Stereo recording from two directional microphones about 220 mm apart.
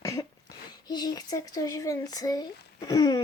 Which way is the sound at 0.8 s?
20° left (ahead or behind).